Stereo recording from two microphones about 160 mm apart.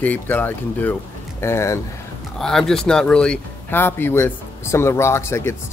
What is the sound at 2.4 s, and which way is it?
Speech, 5° left (ahead or behind).